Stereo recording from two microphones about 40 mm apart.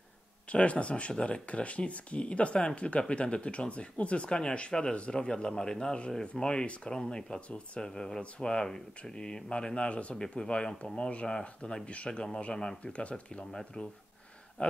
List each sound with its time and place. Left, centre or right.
0.5 s speech: left
7.4 s speech: left
7.8 s speech: centre; by 10.1 s left
10.1 s speech: centre
12.8 s speech: left
13.5 s speech: centre
14.6 s speech: left